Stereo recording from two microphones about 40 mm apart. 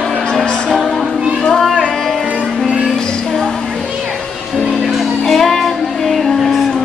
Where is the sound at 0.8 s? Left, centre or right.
Centre.